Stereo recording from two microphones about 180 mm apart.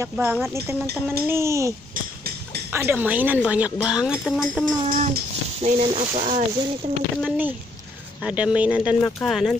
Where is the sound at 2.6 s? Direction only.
10° right (ahead or behind).